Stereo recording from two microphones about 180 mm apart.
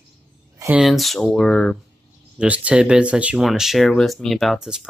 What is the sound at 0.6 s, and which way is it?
Speech, 5° right (ahead or behind).